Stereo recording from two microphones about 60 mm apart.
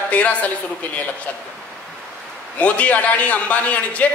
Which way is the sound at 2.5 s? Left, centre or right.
Left.